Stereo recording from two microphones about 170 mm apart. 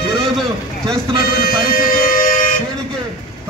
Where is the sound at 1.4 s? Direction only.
60° left (ahead or behind).